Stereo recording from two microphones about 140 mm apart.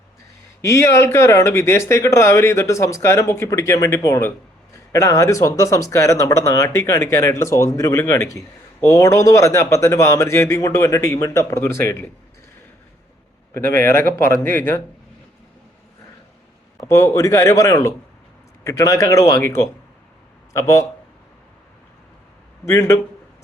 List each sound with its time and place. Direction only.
0.6 s speech: 20° left (ahead or behind)
14.1 s speech: 20° left (ahead or behind)
16.9 s speech: 20° left (ahead or behind)
22.6 s speech: 20° left (ahead or behind)